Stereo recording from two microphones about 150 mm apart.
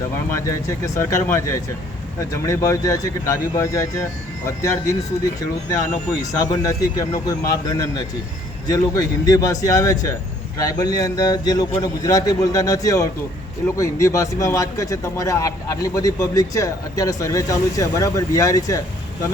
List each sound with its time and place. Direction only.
0.3 s a man's voice: 20° left (ahead or behind)